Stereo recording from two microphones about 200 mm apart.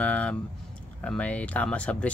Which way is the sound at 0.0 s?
5° left (ahead or behind).